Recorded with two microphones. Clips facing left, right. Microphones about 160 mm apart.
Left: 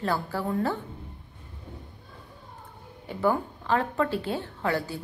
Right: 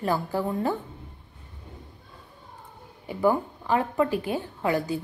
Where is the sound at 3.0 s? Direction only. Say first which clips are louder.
Right 2 dB; 15° right (ahead or behind).